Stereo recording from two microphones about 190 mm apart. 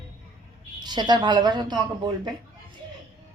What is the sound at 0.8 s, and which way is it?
Speech, 25° right (ahead or behind).